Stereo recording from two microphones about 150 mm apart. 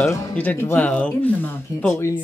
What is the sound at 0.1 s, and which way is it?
Speech, 15° left (ahead or behind).